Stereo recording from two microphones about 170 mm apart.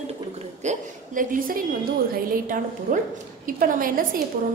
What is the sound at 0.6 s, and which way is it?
A woman's voice, 50° right (ahead or behind).